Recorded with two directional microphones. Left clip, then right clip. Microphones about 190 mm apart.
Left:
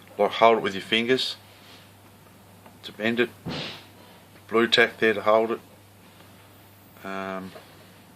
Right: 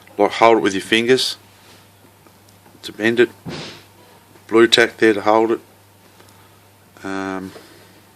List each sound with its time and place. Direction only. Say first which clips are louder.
0.2 s speech: right 6 dB; 50° right (ahead or behind)
2.8 s speech: right 9 dB; 50° right (ahead or behind)
4.4 s speech: right 7 dB; 50° right (ahead or behind)
7.0 s speech: right 7 dB; 50° right (ahead or behind)